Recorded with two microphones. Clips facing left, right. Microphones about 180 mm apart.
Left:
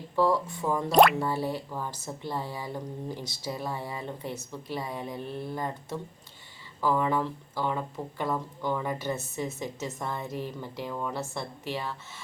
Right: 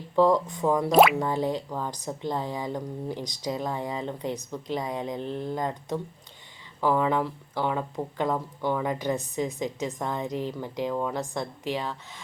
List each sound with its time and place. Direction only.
0.2 s speech: 20° right (ahead or behind)
0.9 s speech: 5° right (ahead or behind)
1.2 s speech: 15° right (ahead or behind)